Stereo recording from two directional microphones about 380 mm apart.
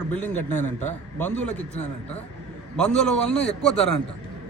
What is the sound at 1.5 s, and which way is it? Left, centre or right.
Speech, centre.